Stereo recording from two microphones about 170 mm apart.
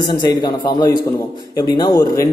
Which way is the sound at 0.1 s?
25° left (ahead or behind).